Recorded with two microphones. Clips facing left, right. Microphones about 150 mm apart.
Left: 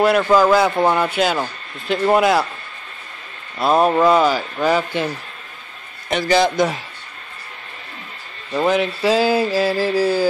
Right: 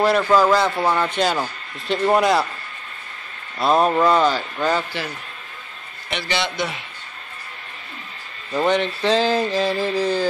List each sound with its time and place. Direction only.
0.0 s speech: centre (ahead or behind)
0.7 s speech: 20° left (ahead or behind)
1.0 s speech: 5° left (ahead or behind)
3.5 s a sound: 5° left (ahead or behind)
6.0 s a man's voice: 40° left (ahead or behind)
8.5 s a sound: 5° left (ahead or behind)